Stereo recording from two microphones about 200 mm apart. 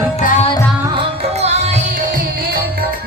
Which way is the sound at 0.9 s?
30° right (ahead or behind).